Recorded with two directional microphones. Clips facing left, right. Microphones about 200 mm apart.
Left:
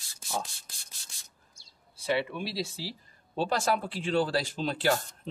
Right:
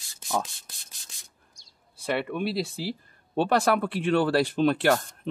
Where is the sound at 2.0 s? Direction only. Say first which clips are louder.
Right 3 dB; 55° right (ahead or behind).